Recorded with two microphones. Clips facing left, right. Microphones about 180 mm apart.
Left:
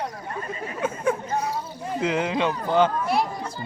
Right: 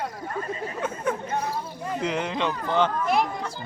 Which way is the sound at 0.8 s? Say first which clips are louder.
Left 4 dB; 10° left (ahead or behind).